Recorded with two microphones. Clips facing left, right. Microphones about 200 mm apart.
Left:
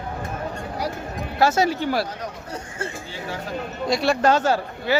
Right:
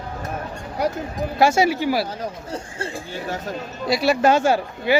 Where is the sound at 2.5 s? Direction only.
30° right (ahead or behind).